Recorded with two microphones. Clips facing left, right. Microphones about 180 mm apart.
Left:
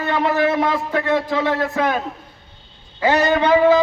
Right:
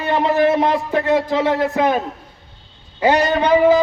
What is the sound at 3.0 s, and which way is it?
Speech, 15° right (ahead or behind).